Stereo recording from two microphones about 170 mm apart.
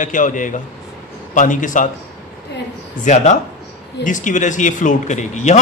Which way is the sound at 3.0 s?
45° left (ahead or behind).